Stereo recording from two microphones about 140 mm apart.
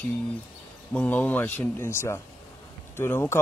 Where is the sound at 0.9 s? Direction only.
10° left (ahead or behind).